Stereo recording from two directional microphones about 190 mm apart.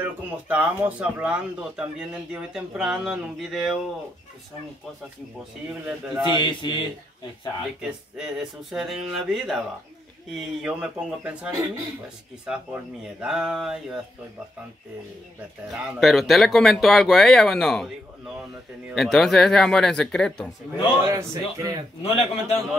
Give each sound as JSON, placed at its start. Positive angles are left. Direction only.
{"t": 0.0, "sound": "speech", "side_deg": -10}
{"t": 5.7, "sound": "speech", "side_deg": -5}
{"t": 6.4, "sound": "speech", "side_deg": 25}
{"t": 7.8, "sound": "speech", "side_deg": 0}
{"t": 15.7, "sound": "speech", "side_deg": 0}
{"t": 18.9, "sound": "speech", "side_deg": 0}
{"t": 21.0, "sound": "speech", "side_deg": -15}
{"t": 22.0, "sound": "a man's voice", "side_deg": 30}